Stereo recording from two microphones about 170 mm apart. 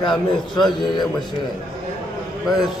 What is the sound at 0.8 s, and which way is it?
Speech, 25° left (ahead or behind).